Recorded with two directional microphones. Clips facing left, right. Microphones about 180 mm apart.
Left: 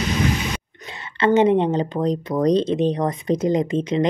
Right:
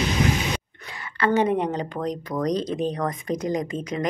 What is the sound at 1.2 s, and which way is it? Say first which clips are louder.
Speech: left 5 dB; 20° left (ahead or behind).